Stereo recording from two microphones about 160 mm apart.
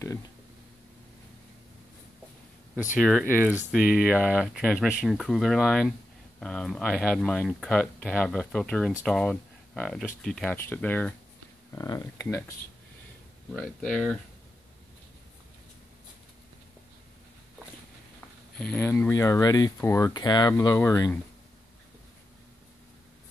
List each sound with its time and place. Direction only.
3.0 s speech: centre (ahead or behind)
11.7 s speech: 20° left (ahead or behind)
13.5 s speech: centre (ahead or behind)
18.6 s speech: 10° left (ahead or behind)